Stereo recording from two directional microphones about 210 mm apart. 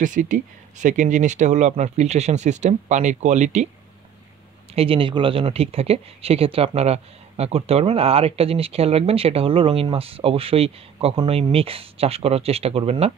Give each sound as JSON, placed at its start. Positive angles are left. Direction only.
{"t": 0.0, "sound": "speech", "side_deg": -35}
{"t": 4.7, "sound": "speech", "side_deg": -25}